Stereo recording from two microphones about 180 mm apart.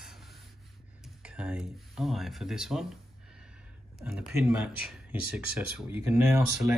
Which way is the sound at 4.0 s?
5° right (ahead or behind).